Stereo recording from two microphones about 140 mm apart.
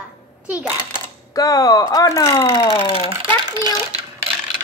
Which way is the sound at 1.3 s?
25° left (ahead or behind).